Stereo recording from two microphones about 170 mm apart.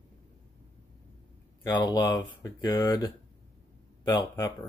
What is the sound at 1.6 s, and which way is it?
Speech, 20° left (ahead or behind).